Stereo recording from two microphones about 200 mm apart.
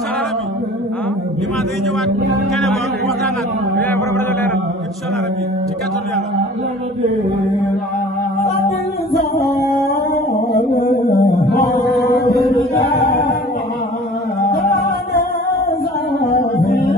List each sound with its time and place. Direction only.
2.5 s speech: centre (ahead or behind)
3.9 s a man's voice: 10° left (ahead or behind)
8.5 s music: 50° left (ahead or behind)
10.7 s music: 50° left (ahead or behind)
11.5 s chant: 50° left (ahead or behind)
12.7 s a capella: 50° left (ahead or behind)
14.4 s music: 50° left (ahead or behind)